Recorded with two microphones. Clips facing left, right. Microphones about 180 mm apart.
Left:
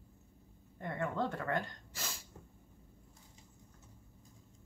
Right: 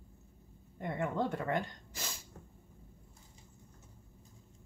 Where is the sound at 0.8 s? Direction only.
15° right (ahead or behind).